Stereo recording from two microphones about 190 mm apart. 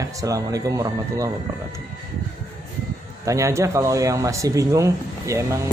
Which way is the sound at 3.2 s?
15° right (ahead or behind).